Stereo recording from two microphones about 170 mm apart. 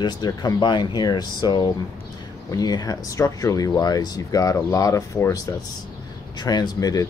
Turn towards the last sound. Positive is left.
turn(degrees=20)  # may be behind; listen again after turning